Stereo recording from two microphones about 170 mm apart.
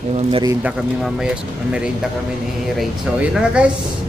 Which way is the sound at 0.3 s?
25° right (ahead or behind).